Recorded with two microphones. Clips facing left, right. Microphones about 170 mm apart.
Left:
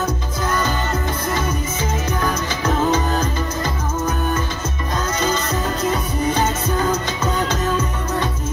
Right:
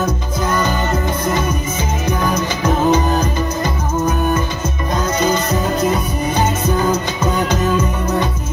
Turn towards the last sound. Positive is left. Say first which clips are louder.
# right 4 dB
turn(degrees=-10)  # may be behind; listen again after turning